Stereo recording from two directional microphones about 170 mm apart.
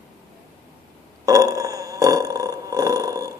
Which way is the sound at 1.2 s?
20° right (ahead or behind).